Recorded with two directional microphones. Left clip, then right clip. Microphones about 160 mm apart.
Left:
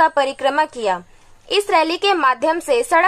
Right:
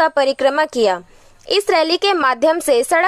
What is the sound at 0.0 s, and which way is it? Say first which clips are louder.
A woman's voice: right 1 dB; 35° right (ahead or behind).